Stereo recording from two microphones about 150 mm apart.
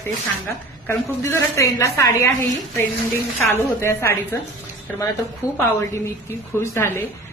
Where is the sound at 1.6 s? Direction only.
20° left (ahead or behind).